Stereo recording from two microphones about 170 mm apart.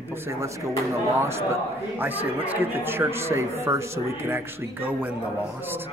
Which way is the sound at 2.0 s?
10° right (ahead or behind).